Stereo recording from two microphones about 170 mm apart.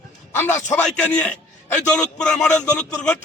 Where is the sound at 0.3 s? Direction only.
10° left (ahead or behind).